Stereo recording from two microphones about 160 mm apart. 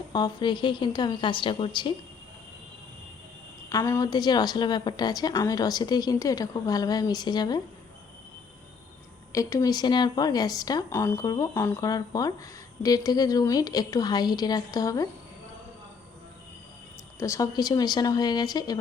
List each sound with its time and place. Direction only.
0.1 s a woman's voice: 25° left (ahead or behind)
3.7 s a woman's voice: 20° left (ahead or behind)
9.3 s a woman's voice: 20° left (ahead or behind)
17.2 s a woman's voice: 20° left (ahead or behind)